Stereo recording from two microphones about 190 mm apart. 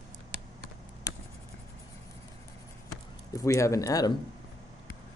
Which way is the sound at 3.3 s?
15° left (ahead or behind).